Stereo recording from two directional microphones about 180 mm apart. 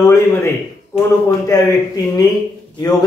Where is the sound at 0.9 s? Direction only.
35° left (ahead or behind).